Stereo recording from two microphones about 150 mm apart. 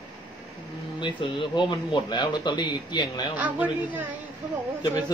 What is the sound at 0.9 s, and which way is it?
A man's voice, 30° left (ahead or behind).